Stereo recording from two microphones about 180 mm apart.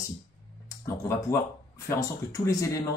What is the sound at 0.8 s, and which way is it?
Speech, 15° left (ahead or behind).